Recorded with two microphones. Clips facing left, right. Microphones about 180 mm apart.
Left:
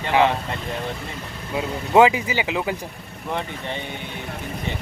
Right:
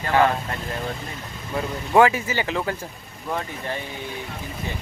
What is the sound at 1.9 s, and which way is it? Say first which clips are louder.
Speech: left 2 dB; 15° left (ahead or behind).